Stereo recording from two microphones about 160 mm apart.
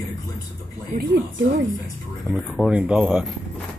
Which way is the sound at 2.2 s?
Centre (ahead or behind).